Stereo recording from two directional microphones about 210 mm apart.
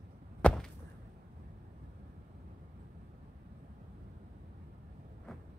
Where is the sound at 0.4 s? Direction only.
Centre (ahead or behind).